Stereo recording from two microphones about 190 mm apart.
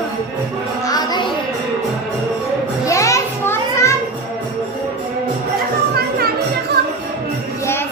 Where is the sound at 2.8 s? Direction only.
15° left (ahead or behind).